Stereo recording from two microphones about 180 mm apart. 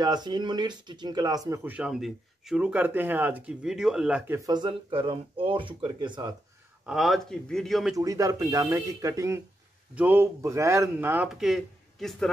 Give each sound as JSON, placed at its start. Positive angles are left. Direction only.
{"t": 0.0, "sound": "speech", "side_deg": -25}
{"t": 4.4, "sound": "speech", "side_deg": -20}
{"t": 6.9, "sound": "speech", "side_deg": 0}
{"t": 7.9, "sound": "speech", "side_deg": -20}